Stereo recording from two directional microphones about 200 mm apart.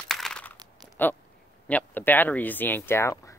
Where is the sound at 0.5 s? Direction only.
20° right (ahead or behind).